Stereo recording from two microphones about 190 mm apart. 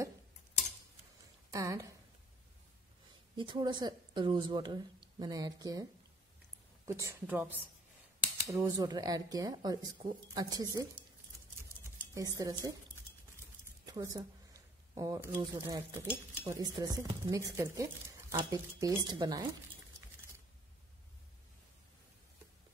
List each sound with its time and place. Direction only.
1.5 s speech: 15° right (ahead or behind)
3.3 s speech: 25° right (ahead or behind)
6.9 s speech: 15° right (ahead or behind)
12.1 s speech: 20° right (ahead or behind)
13.8 s a woman's voice: 20° right (ahead or behind)